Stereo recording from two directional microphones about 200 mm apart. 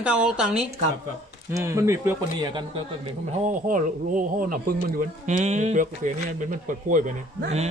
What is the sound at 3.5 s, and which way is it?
Speech, 40° right (ahead or behind).